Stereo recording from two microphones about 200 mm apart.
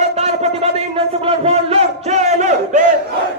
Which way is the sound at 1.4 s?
30° right (ahead or behind).